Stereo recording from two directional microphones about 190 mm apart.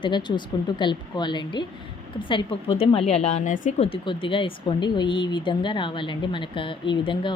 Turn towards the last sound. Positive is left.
turn(degrees=25)  # may be behind; listen again after turning